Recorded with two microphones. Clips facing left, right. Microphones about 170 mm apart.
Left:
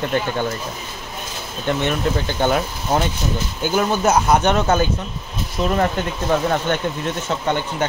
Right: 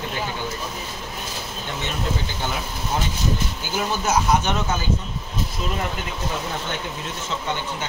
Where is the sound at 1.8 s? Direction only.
60° left (ahead or behind).